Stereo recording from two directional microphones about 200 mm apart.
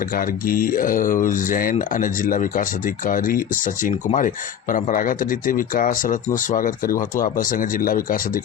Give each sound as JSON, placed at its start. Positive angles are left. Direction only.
{"t": 0.1, "sound": "speech", "side_deg": 45}